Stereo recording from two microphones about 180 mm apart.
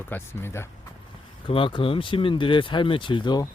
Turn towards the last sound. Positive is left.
turn(degrees=25)  # may be behind; listen again after turning